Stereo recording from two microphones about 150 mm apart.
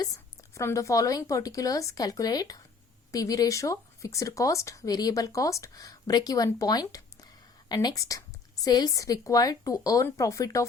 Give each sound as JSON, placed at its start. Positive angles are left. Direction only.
{"t": 0.0, "sound": "speech", "side_deg": 20}